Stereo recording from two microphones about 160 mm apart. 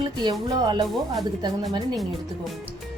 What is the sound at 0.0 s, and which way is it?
Speech, 25° right (ahead or behind).